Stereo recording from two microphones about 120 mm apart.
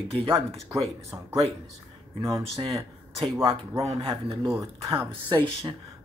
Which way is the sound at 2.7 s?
35° right (ahead or behind).